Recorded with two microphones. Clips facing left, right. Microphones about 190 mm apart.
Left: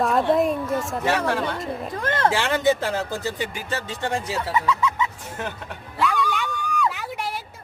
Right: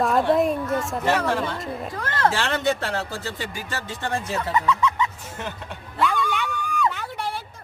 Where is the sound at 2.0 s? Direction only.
20° left (ahead or behind).